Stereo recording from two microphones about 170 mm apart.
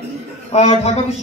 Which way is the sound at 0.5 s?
40° left (ahead or behind).